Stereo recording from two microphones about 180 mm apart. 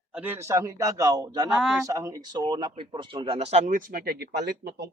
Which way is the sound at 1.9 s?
15° right (ahead or behind).